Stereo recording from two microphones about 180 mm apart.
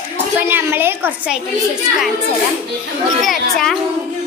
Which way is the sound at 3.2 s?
Centre (ahead or behind).